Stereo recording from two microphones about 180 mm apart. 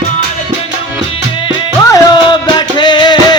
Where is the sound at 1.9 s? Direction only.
25° left (ahead or behind).